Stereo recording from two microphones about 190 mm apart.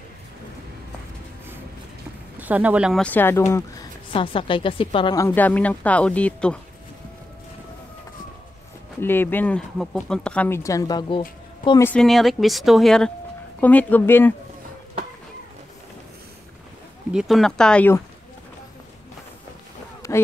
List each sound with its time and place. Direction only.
2.3 s speech: 10° right (ahead or behind)
3.0 s speech: 10° left (ahead or behind)
4.1 s speech: 30° left (ahead or behind); by 6.6 s 5° left (ahead or behind)
9.0 s speech: 10° left (ahead or behind)
11.8 s speech: 5° left (ahead or behind)
17.1 s speech: centre (ahead or behind)
20.0 s a sound: 15° left (ahead or behind)